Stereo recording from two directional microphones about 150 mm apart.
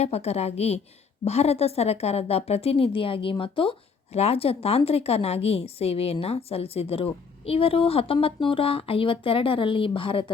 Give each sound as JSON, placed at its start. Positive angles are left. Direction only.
{"t": 0.0, "sound": "a woman's voice", "side_deg": 45}